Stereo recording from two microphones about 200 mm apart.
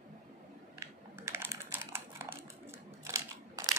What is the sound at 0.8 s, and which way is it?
Typing, 15° right (ahead or behind).